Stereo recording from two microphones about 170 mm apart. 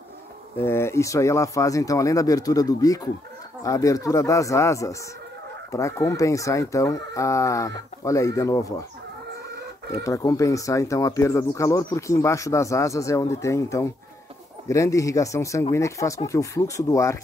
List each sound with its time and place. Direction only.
0.6 s speech: 15° left (ahead or behind)
10.0 s speech: 20° left (ahead or behind)